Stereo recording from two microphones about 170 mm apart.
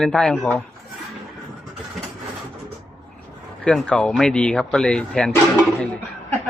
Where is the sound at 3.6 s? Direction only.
5° left (ahead or behind).